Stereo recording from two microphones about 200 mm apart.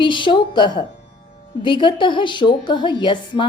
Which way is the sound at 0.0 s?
25° left (ahead or behind).